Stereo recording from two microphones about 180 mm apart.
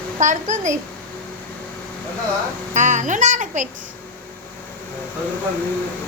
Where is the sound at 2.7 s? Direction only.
40° right (ahead or behind).